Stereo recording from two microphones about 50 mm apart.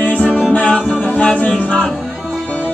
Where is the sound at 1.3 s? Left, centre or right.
Left.